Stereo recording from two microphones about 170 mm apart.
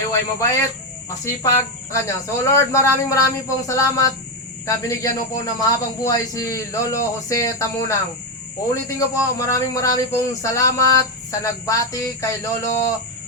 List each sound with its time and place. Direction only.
0.1 s a man's voice: 20° left (ahead or behind)